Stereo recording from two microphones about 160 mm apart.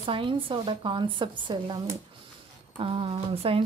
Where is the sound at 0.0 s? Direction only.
35° right (ahead or behind).